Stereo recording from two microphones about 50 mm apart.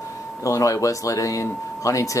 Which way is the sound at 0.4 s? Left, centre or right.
Left.